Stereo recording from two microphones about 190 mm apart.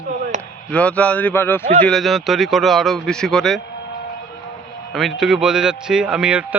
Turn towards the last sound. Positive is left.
turn(degrees=-5)  # may be behind; listen again after turning